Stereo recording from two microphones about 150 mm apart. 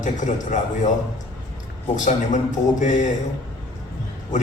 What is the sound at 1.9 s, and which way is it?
Speech, 55° left (ahead or behind).